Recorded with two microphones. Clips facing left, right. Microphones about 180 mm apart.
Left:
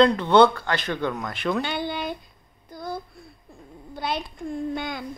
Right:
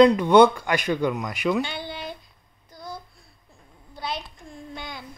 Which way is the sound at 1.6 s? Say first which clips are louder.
Left 3 dB; 55° left (ahead or behind).